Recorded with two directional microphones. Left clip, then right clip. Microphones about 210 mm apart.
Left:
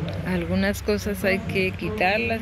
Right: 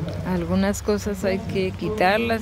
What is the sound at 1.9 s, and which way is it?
Speech, 20° right (ahead or behind).